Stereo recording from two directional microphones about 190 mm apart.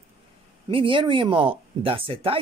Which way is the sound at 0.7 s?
25° right (ahead or behind).